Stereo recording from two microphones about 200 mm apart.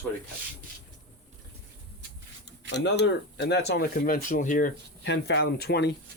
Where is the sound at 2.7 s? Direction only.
60° left (ahead or behind); by 4.7 s 40° left (ahead or behind).